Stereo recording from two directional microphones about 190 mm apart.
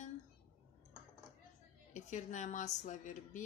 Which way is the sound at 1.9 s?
40° left (ahead or behind).